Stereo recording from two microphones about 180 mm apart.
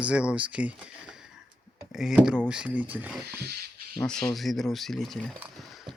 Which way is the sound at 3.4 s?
60° right (ahead or behind).